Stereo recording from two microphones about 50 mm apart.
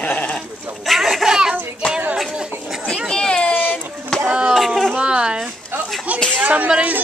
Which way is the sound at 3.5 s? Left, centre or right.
Left.